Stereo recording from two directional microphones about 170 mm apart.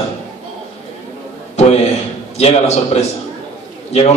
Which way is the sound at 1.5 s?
40° left (ahead or behind).